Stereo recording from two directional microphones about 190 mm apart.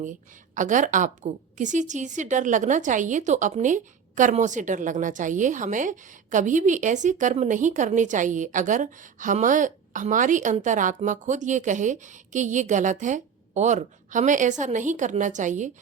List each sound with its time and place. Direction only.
0.5 s a woman's voice: 40° right (ahead or behind)